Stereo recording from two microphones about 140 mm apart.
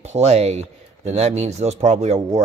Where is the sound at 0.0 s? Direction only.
50° right (ahead or behind).